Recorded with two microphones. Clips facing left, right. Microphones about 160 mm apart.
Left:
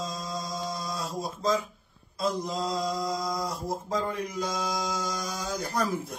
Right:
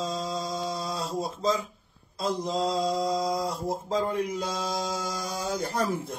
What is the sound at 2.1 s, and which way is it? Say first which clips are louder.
Mantra: right 1 dB; 30° right (ahead or behind).